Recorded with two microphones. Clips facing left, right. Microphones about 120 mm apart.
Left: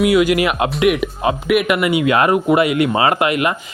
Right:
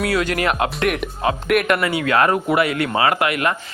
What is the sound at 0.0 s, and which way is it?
Speech, 15° left (ahead or behind).